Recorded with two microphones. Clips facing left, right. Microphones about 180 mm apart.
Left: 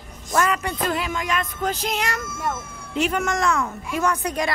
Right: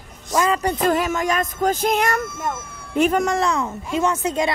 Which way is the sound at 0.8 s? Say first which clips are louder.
Right 6 dB; 45° right (ahead or behind).